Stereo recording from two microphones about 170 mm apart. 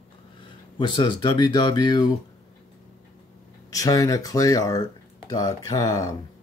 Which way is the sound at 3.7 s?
20° left (ahead or behind).